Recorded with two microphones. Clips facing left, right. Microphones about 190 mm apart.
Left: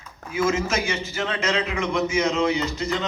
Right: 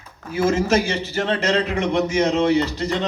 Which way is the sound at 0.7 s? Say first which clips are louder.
Right 6 dB; 35° right (ahead or behind).